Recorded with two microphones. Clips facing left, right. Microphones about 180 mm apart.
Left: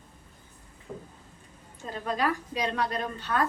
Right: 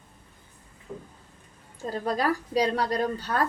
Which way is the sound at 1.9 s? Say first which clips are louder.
Right 3 dB; 40° right (ahead or behind).